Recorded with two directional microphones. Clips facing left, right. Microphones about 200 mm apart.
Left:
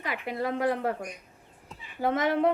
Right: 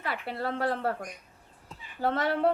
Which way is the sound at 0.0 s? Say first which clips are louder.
Left 2 dB; 15° left (ahead or behind).